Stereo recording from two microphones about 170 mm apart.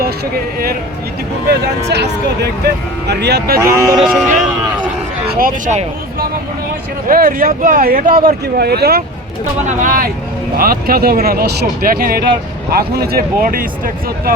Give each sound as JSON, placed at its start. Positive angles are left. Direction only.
{"t": 1.9, "sound": "speech", "side_deg": -80}
{"t": 3.6, "sound": "speech", "side_deg": -20}
{"t": 3.9, "sound": "speech", "side_deg": 0}
{"t": 5.3, "sound": "speech", "side_deg": -50}
{"t": 9.6, "sound": "speech", "side_deg": -55}